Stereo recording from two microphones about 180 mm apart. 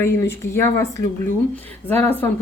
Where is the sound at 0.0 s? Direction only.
15° left (ahead or behind).